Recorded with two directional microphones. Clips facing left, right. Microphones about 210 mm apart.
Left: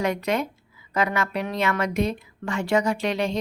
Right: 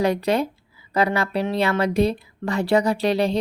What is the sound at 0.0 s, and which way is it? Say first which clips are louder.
A woman's voice: right 4 dB; 35° right (ahead or behind).